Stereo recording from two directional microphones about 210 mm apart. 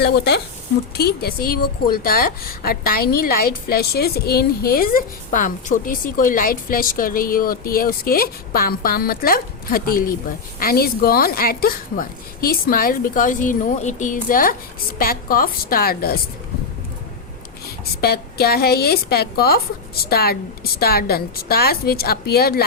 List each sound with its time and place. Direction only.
0.0 s a woman's voice: 50° left (ahead or behind)
18.0 s a woman's voice: 50° left (ahead or behind)